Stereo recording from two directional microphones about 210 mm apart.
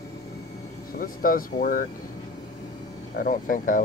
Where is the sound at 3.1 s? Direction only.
40° left (ahead or behind).